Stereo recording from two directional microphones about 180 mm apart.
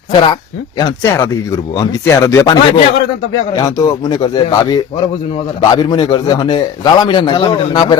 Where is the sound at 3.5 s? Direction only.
20° left (ahead or behind).